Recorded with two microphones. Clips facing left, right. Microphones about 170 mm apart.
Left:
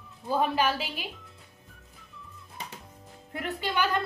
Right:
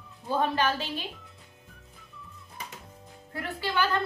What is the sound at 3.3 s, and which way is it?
Speech, 20° left (ahead or behind).